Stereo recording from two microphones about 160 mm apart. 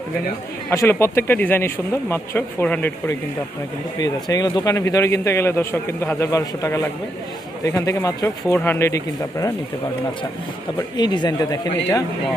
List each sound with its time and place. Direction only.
0.7 s speech: 15° left (ahead or behind)
4.0 s a man's voice: 25° left (ahead or behind)
10.8 s a man's voice: 25° left (ahead or behind)